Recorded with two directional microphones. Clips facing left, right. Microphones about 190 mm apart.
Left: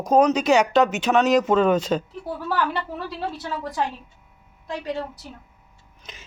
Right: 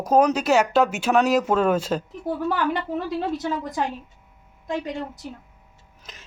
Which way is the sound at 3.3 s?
20° right (ahead or behind).